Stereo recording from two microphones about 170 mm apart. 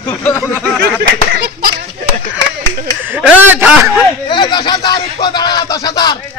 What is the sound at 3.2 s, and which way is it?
Speech, 10° right (ahead or behind).